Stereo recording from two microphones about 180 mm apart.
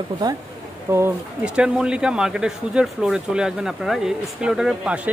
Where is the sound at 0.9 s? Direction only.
10° right (ahead or behind).